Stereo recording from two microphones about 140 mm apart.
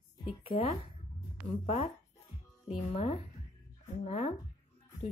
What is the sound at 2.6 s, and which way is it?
A child's voice, 45° left (ahead or behind).